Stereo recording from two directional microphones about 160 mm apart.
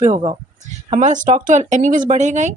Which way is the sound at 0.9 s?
55° right (ahead or behind).